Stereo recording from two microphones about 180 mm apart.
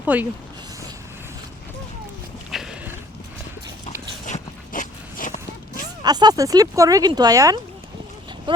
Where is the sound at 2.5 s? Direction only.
5° right (ahead or behind).